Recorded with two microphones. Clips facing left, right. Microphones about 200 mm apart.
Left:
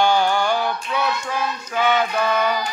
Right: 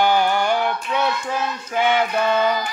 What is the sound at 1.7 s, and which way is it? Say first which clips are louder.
Music: right 1 dB; 25° right (ahead or behind).